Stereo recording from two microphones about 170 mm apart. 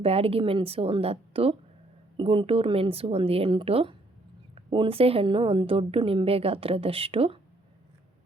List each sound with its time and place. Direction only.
0.0 s a woman's voice: 35° right (ahead or behind)